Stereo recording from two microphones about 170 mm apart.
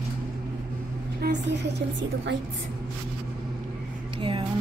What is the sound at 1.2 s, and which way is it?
A woman's voice, 90° right.